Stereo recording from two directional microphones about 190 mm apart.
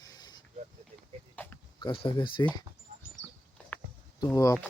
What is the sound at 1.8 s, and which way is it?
Speech, 25° left (ahead or behind).